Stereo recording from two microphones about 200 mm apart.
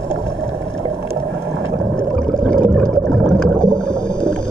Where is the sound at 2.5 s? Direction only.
5° left (ahead or behind).